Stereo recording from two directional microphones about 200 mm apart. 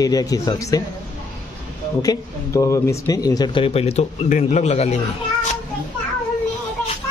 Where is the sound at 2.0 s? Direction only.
15° left (ahead or behind); by 5.0 s 35° left (ahead or behind).